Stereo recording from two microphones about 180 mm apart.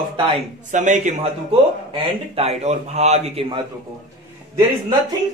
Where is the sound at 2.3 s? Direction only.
35° right (ahead or behind).